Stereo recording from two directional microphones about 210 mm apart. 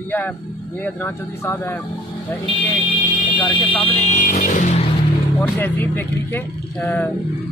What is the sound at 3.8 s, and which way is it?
Vehicle, 30° left (ahead or behind).